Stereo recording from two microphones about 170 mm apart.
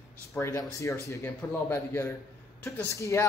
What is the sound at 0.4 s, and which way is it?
Speech, 20° left (ahead or behind).